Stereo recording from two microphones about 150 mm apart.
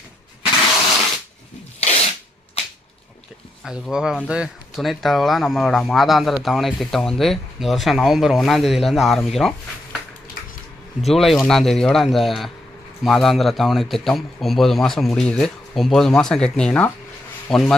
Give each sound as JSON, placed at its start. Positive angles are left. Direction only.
{"t": 1.8, "sound": "a sound", "side_deg": 45}
{"t": 3.6, "sound": "speech", "side_deg": -5}
{"t": 11.0, "sound": "speech", "side_deg": 0}